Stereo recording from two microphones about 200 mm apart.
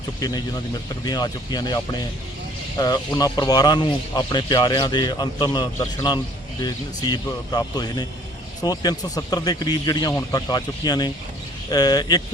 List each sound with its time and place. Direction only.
0.2 s a man's voice: 20° left (ahead or behind)